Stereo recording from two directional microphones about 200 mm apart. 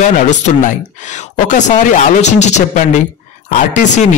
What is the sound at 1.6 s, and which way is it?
A man's voice, 35° left (ahead or behind).